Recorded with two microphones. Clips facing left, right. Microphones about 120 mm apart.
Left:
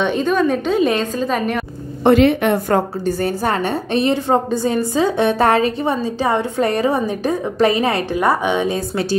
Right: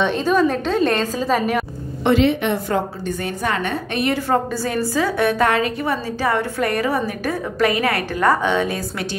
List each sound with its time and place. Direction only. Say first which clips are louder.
0.0 s a woman's voice: left 1 dB; centre (ahead or behind)
2.0 s a woman's voice: left 4 dB; 50° left (ahead or behind); by 9.0 s 25° left (ahead or behind)